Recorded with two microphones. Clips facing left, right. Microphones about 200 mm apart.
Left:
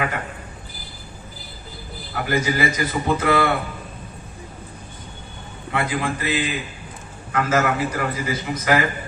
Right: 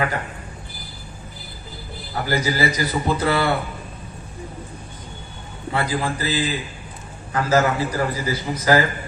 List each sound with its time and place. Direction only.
2.2 s a man's voice: 35° right (ahead or behind)
5.7 s a man's voice: 35° right (ahead or behind)